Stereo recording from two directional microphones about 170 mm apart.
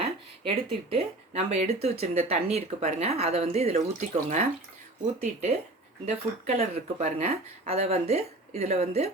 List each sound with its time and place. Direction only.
0.4 s speech: 35° right (ahead or behind)